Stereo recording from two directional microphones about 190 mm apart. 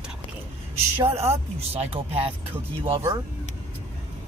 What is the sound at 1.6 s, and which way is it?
Speech, 30° right (ahead or behind).